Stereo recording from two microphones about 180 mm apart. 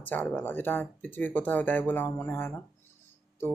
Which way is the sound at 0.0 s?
10° left (ahead or behind).